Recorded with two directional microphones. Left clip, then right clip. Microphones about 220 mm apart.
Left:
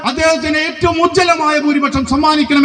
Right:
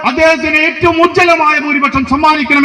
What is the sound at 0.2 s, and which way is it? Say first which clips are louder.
A man's voice: right 4 dB; 30° right (ahead or behind).